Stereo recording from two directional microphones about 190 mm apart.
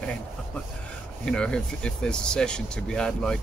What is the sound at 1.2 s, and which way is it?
Speech, 5° left (ahead or behind).